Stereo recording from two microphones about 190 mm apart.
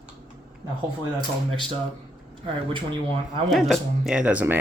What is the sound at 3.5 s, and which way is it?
Speech, centre (ahead or behind).